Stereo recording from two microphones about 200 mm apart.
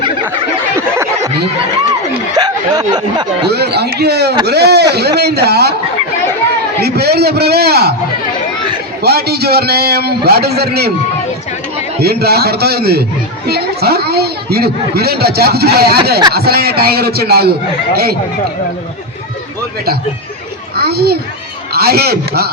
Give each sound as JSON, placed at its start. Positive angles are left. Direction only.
{"t": 0.8, "sound": "snicker", "side_deg": -15}
{"t": 2.3, "sound": "speech", "side_deg": -20}
{"t": 3.5, "sound": "a man's voice", "side_deg": -55}
{"t": 6.8, "sound": "speech", "side_deg": -55}
{"t": 9.0, "sound": "speech", "side_deg": -55}
{"t": 11.9, "sound": "speech", "side_deg": -50}
{"t": 20.7, "sound": "a child's voice", "side_deg": -50}